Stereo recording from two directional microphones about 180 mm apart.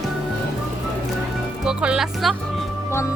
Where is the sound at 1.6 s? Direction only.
5° right (ahead or behind).